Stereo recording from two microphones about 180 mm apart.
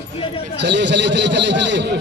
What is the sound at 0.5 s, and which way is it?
A man's voice, 75° right (ahead or behind).